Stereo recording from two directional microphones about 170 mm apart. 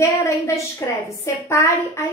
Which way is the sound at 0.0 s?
15° left (ahead or behind).